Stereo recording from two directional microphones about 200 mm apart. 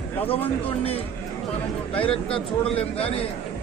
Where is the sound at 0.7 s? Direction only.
30° left (ahead or behind).